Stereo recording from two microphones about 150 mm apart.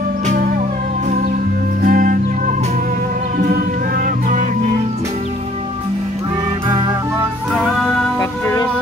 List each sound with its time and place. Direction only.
1.8 s music: 65° right (ahead or behind)
3.3 s music: 80° right
7.5 s music: 5° left (ahead or behind)
8.2 s music: 20° left (ahead or behind)